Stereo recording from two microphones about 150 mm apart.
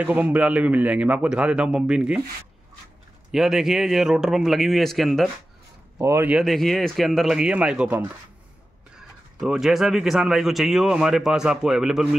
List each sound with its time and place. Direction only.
0.0 s speech: 10° right (ahead or behind)
3.3 s speech: centre (ahead or behind)
5.9 s speech: 20° right (ahead or behind)
6.3 s speech: centre (ahead or behind)